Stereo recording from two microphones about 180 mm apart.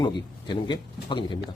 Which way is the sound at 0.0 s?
25° left (ahead or behind).